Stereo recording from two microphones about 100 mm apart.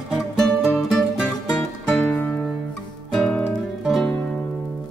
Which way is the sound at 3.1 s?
5° left (ahead or behind).